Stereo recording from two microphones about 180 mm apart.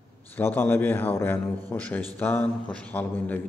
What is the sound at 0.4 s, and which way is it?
A man's voice, 10° left (ahead or behind).